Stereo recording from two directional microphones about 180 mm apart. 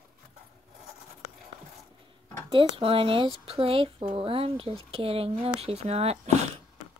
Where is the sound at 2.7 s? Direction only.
30° right (ahead or behind).